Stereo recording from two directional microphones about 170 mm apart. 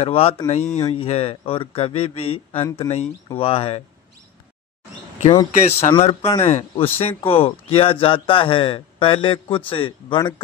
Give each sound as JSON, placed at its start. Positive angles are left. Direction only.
{"t": 0.0, "sound": "speech", "side_deg": 35}
{"t": 5.2, "sound": "speech", "side_deg": 30}